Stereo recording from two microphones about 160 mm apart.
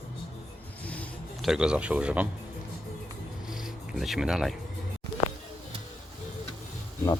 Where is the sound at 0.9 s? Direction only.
10° left (ahead or behind).